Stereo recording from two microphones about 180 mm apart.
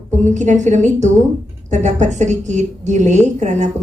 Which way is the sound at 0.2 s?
40° right (ahead or behind).